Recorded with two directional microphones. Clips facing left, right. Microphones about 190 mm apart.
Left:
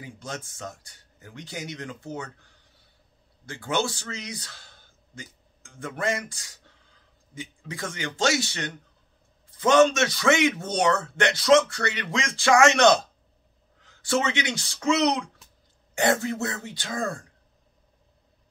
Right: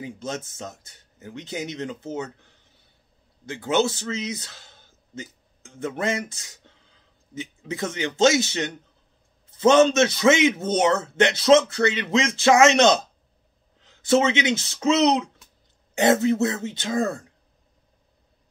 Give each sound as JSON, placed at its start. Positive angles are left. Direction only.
{"t": 0.0, "sound": "a man's voice", "side_deg": -25}